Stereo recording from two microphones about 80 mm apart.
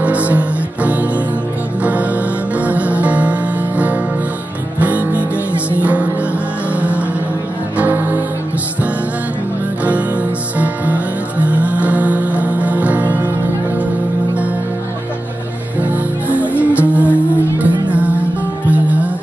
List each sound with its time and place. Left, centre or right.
0.0 s music: centre
7.7 s music: right
10.6 s music: centre
15.8 s music: centre